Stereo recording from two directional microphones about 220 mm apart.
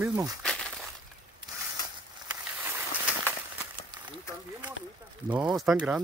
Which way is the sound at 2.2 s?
10° right (ahead or behind).